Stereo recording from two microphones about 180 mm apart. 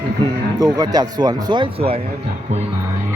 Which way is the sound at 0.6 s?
20° right (ahead or behind).